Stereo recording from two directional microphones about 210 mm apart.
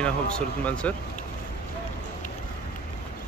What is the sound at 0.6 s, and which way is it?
Speech, 5° left (ahead or behind).